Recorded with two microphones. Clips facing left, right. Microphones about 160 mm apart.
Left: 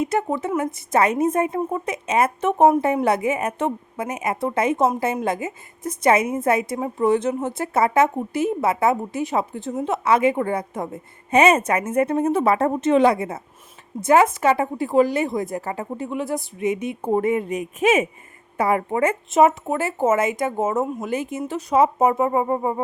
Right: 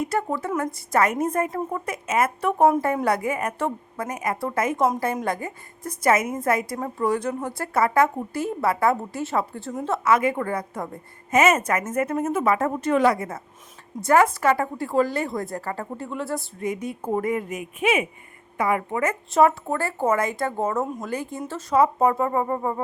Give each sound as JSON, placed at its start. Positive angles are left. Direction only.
{"t": 0.0, "sound": "a woman's voice", "side_deg": 20}